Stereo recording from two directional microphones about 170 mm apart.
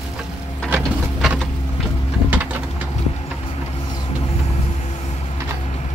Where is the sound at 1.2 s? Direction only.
Centre (ahead or behind).